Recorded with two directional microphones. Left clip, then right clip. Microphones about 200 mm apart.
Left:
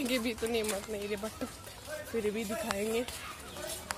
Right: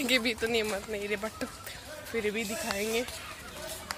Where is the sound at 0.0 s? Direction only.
Centre (ahead or behind).